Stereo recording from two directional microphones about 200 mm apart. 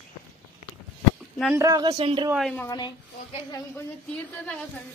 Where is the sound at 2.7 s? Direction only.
20° left (ahead or behind).